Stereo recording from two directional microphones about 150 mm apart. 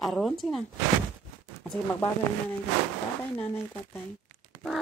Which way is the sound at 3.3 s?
15° left (ahead or behind).